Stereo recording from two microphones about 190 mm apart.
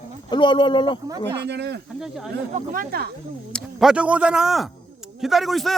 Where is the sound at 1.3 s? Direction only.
65° right (ahead or behind).